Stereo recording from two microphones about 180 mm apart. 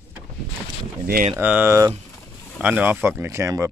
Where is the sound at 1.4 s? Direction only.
10° right (ahead or behind).